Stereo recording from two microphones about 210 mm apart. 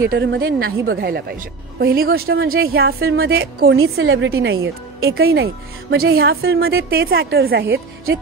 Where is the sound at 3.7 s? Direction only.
70° right (ahead or behind).